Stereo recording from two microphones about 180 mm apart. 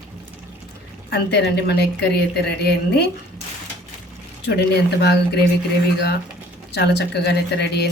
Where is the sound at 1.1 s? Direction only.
65° left (ahead or behind).